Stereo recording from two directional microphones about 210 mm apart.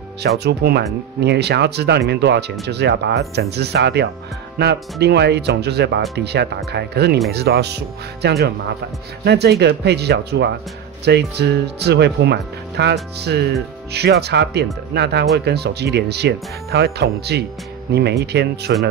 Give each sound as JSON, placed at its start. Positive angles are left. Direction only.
{"t": 0.4, "sound": "speech", "side_deg": -50}